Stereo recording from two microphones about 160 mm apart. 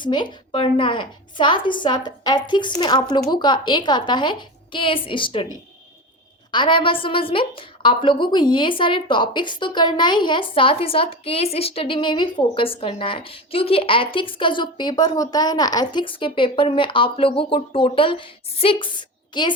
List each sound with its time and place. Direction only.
0.0 s a woman's voice: 30° left (ahead or behind)
6.5 s a woman's voice: 30° left (ahead or behind)